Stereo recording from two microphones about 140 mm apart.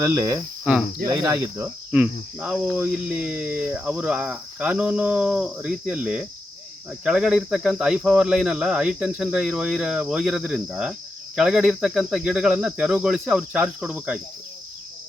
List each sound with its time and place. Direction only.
0.0 s cricket: 20° right (ahead or behind)
0.6 s speech: 5° right (ahead or behind)
1.0 s cricket: 25° right (ahead or behind)
1.9 s cricket: 10° right (ahead or behind)